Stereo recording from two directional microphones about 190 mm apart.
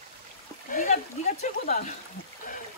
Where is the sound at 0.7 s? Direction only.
45° left (ahead or behind).